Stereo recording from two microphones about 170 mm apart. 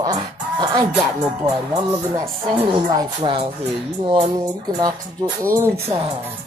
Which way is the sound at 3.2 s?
30° right (ahead or behind).